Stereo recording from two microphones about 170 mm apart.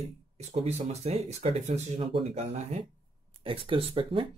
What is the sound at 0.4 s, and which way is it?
Speech, 40° right (ahead or behind).